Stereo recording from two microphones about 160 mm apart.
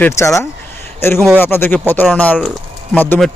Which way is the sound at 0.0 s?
15° left (ahead or behind).